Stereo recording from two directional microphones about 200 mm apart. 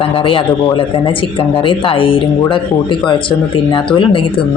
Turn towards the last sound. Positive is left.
turn(degrees=25)  # may be behind; listen again after turning